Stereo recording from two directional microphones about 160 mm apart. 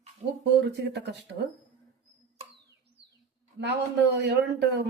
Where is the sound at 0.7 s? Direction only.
90° right.